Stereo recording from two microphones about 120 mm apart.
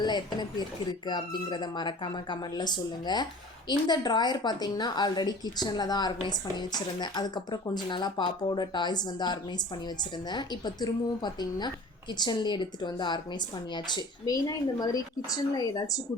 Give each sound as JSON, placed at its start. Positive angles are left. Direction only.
{"t": 0.0, "sound": "speech", "side_deg": 35}